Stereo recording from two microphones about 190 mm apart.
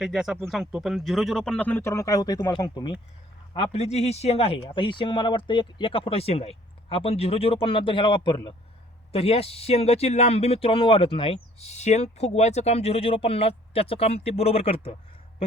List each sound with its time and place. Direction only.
0.0 s speech: centre (ahead or behind); by 2.9 s 20° left (ahead or behind)
3.5 s speech: 30° left (ahead or behind)